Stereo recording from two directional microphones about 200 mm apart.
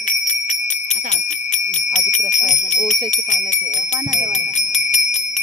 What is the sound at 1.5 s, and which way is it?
Bicycle bell, 35° left (ahead or behind).